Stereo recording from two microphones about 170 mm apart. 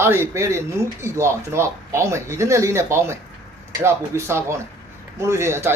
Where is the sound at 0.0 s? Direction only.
15° right (ahead or behind).